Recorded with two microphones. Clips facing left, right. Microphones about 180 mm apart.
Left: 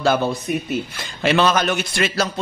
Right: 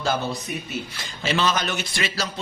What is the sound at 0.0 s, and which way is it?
A man's voice, 65° left (ahead or behind).